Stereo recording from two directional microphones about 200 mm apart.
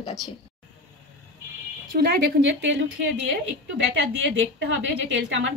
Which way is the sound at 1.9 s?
60° right (ahead or behind).